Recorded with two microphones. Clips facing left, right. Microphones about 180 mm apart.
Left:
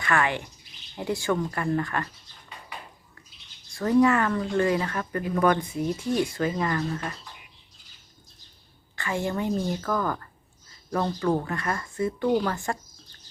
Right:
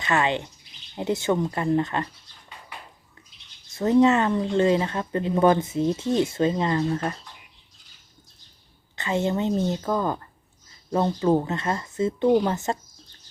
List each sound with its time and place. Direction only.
0.0 s speech: 20° right (ahead or behind)
3.7 s speech: 20° right (ahead or behind)
9.0 s speech: 20° right (ahead or behind)